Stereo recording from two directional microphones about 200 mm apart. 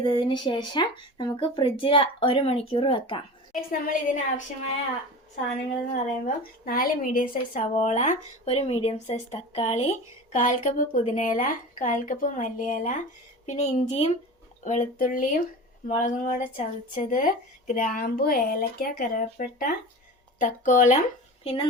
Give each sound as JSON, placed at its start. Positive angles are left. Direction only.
{"t": 0.0, "sound": "speech", "side_deg": 25}
{"t": 3.5, "sound": "a woman's voice", "side_deg": 45}
{"t": 5.9, "sound": "a woman's voice", "side_deg": 45}
{"t": 21.4, "sound": "speech", "side_deg": 25}